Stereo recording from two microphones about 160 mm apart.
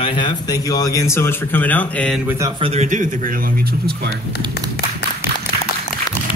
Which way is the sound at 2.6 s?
40° right (ahead or behind).